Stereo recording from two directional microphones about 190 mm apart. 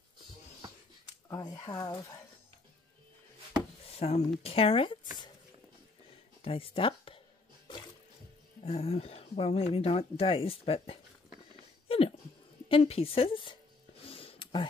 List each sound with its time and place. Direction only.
1.3 s a woman's voice: 20° left (ahead or behind)
4.0 s speech: 35° left (ahead or behind)
6.4 s speech: 30° left (ahead or behind)
8.6 s speech: 30° left (ahead or behind)
11.9 s a sound: 30° left (ahead or behind)
12.6 s a woman's voice: 30° left (ahead or behind)
14.0 s a sound: 30° left (ahead or behind)